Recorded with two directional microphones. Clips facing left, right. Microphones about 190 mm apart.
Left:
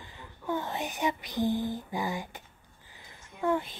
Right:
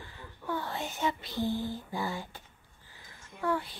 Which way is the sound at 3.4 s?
20° left (ahead or behind).